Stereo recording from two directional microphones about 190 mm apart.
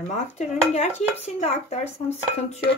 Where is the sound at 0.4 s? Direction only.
35° left (ahead or behind).